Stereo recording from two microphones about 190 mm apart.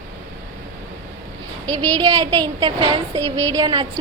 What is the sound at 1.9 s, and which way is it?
A woman's voice, 20° right (ahead or behind).